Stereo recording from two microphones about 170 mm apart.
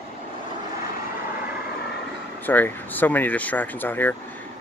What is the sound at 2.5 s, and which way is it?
Speech, 10° left (ahead or behind).